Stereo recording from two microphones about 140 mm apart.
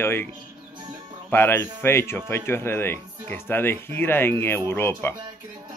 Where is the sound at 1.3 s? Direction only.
15° left (ahead or behind).